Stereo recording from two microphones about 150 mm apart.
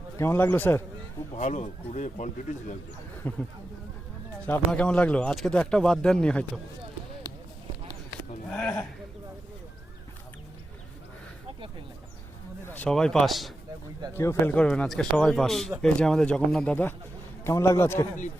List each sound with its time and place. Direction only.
0.2 s speech: 15° left (ahead or behind)
1.3 s a man's voice: 50° left (ahead or behind)
3.2 s speech: 10° left (ahead or behind)
4.7 s speech: 5° left (ahead or behind)
8.4 s speech: 5° left (ahead or behind)
12.7 s speech: 5° left (ahead or behind)
14.2 s speech: 15° left (ahead or behind)